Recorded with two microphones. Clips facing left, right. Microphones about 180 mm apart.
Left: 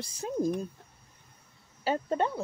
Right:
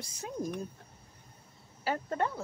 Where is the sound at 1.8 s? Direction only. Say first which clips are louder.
Left 4 dB; 25° left (ahead or behind).